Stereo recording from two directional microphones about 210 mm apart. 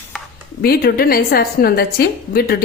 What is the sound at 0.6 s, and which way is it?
Speech, 50° left (ahead or behind).